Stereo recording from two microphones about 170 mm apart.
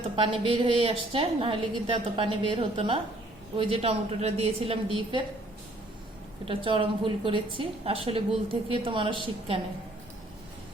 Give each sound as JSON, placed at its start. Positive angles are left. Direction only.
{"t": 0.2, "sound": "a woman's voice", "side_deg": -30}
{"t": 6.4, "sound": "a woman's voice", "side_deg": -30}